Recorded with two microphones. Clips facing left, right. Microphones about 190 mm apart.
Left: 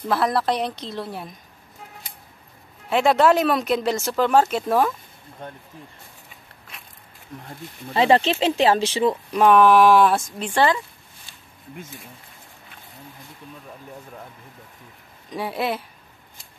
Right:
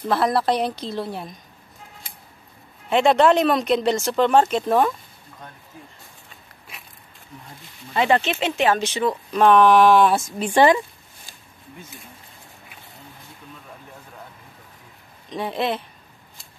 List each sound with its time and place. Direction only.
0.1 s speech: centre (ahead or behind)
2.9 s speech: 5° left (ahead or behind)
7.9 s speech: 30° left (ahead or behind)
9.3 s speech: 10° left (ahead or behind)
10.4 s speech: 15° right (ahead or behind)
15.2 s speech: 5° left (ahead or behind)